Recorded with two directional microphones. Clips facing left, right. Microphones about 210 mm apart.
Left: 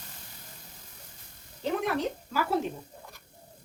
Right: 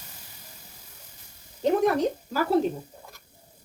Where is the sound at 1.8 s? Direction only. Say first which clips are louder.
Right 7 dB; 40° right (ahead or behind).